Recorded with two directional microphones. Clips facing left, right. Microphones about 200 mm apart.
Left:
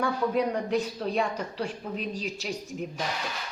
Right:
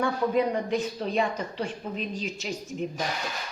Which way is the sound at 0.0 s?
Centre (ahead or behind).